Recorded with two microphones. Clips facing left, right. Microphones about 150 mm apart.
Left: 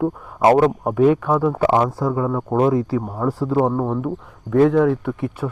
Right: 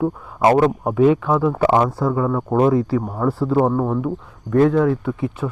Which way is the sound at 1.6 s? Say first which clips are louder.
Right 1 dB; 10° left (ahead or behind).